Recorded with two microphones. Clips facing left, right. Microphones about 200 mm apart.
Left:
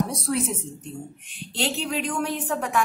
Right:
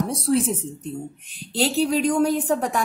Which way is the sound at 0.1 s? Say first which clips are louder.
Right 6 dB; 30° right (ahead or behind).